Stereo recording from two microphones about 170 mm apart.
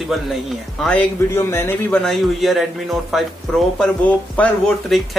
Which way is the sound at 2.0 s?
Centre (ahead or behind).